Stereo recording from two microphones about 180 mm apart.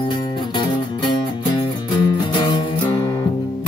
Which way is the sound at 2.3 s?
25° left (ahead or behind).